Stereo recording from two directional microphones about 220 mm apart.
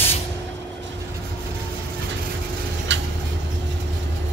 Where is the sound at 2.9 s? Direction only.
55° right (ahead or behind).